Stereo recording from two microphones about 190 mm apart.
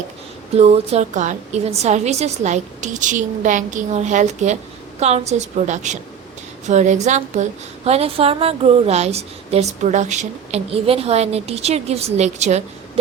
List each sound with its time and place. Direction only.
0.5 s a woman's voice: 35° right (ahead or behind)